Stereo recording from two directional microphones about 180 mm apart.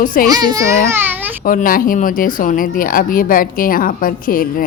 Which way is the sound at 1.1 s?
10° right (ahead or behind).